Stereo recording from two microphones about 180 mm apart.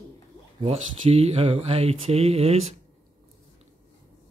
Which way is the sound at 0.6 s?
35° right (ahead or behind).